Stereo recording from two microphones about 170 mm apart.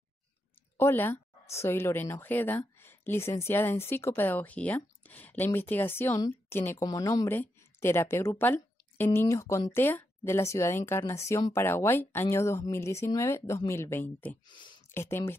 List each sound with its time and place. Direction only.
0.7 s speech: 15° left (ahead or behind)